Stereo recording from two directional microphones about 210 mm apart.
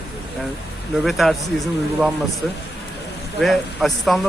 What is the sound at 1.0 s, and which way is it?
Speech, centre (ahead or behind).